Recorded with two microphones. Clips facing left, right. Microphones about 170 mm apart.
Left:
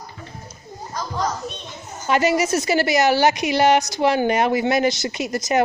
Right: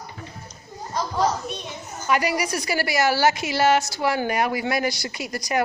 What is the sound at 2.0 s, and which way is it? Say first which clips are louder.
A woman's voice: left 4 dB; 25° left (ahead or behind).